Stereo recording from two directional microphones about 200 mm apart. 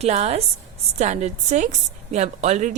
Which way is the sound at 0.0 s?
35° right (ahead or behind).